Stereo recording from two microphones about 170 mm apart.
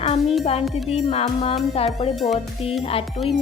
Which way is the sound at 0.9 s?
35° left (ahead or behind).